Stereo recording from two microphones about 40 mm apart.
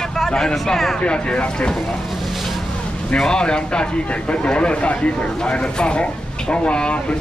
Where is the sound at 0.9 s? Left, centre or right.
Left.